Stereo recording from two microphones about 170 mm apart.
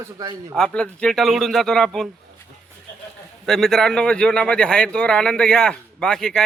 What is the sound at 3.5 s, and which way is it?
A man's voice, centre (ahead or behind).